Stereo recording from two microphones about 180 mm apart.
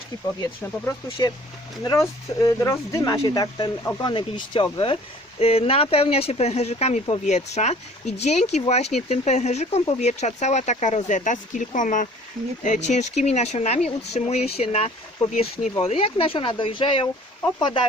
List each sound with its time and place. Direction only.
0.4 s speech: 15° left (ahead or behind)